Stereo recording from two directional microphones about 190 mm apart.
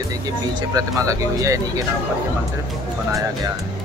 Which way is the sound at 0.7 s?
15° right (ahead or behind).